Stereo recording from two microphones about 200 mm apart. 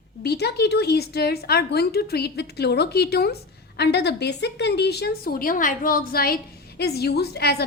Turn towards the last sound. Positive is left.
turn(degrees=50)  # may be behind; listen again after turning